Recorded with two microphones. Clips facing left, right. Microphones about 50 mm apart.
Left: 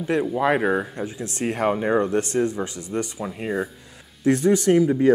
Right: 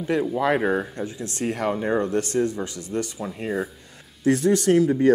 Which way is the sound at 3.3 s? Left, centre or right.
Centre.